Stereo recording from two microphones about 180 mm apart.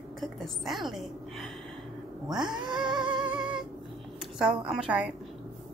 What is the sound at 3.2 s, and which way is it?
Humming, 5° right (ahead or behind).